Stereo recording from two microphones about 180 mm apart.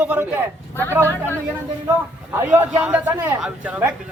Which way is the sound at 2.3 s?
10° right (ahead or behind).